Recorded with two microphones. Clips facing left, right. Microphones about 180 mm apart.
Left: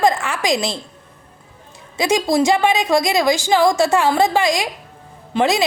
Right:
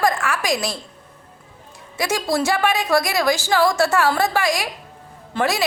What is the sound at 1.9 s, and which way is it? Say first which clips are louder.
A woman's voice: left 5 dB; 20° left (ahead or behind).